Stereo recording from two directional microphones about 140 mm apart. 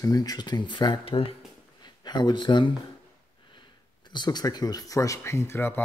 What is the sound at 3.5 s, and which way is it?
Speech, 35° left (ahead or behind).